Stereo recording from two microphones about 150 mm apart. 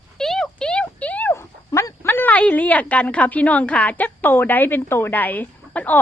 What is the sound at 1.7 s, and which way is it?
A woman's voice, 20° left (ahead or behind).